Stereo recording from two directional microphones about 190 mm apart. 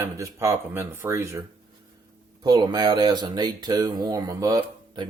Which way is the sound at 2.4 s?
20° right (ahead or behind).